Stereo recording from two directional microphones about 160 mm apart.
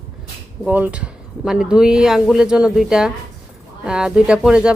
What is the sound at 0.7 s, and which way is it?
Speech, 10° right (ahead or behind).